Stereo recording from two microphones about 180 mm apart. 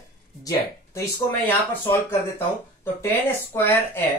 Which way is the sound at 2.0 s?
15° left (ahead or behind).